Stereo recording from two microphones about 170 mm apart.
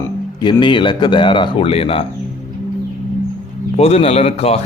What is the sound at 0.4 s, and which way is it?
Speech, 30° left (ahead or behind).